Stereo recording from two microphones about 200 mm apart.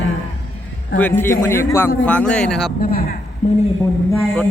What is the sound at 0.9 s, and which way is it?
A man's voice, 10° left (ahead or behind).